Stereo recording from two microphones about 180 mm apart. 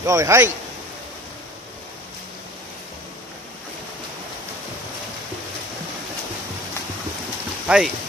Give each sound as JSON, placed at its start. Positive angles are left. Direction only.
{"t": 0.0, "sound": "a man's voice", "side_deg": -15}
{"t": 7.6, "sound": "speech", "side_deg": -5}